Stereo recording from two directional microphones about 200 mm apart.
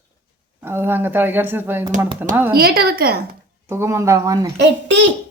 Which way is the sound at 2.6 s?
50° right (ahead or behind).